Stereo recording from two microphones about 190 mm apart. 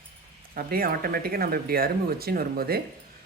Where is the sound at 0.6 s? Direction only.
50° right (ahead or behind).